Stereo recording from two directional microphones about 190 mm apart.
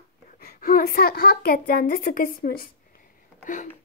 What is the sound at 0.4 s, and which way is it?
A woman's voice, 50° left (ahead or behind).